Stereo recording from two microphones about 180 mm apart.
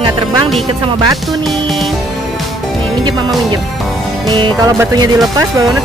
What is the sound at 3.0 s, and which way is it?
Speech, 25° right (ahead or behind).